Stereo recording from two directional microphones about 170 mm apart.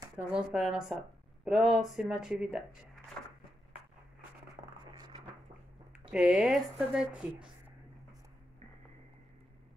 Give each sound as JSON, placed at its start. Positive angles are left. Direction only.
{"t": 0.1, "sound": "speech", "side_deg": -5}
{"t": 4.9, "sound": "a sound", "side_deg": -25}
{"t": 6.1, "sound": "speech", "side_deg": -5}